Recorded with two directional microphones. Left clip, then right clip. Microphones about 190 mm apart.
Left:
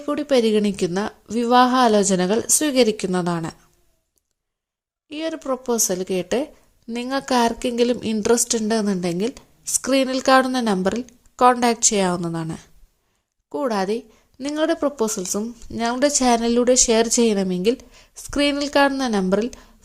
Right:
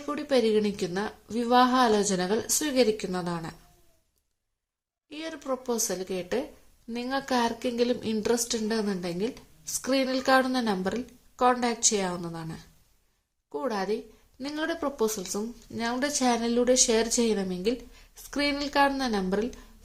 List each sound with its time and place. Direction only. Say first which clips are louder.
0.0 s a woman's voice: left 7 dB; 35° left (ahead or behind)
5.0 s a woman's voice: left 8 dB; 40° left (ahead or behind)